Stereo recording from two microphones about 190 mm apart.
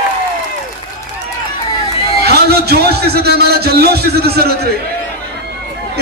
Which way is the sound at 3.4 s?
55° right (ahead or behind).